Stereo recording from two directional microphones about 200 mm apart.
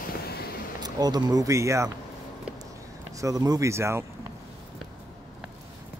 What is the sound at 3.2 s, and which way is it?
Speech, 15° right (ahead or behind).